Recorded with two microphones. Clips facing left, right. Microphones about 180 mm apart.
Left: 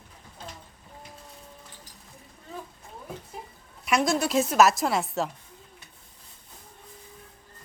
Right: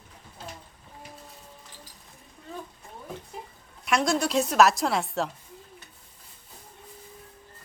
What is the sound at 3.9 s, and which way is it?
A woman's voice, centre (ahead or behind).